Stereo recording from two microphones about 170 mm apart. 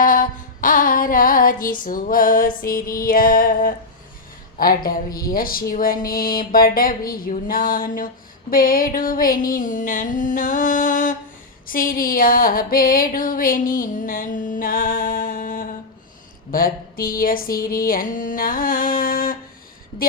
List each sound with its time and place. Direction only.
0.0 s female singing: 55° left (ahead or behind)
4.5 s speech: 60° left (ahead or behind)
17.7 s a sound: 55° left (ahead or behind)